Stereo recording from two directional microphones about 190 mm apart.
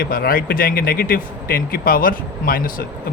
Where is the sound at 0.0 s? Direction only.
50° left (ahead or behind).